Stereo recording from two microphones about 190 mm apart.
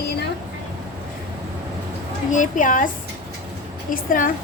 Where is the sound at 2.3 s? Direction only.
40° left (ahead or behind).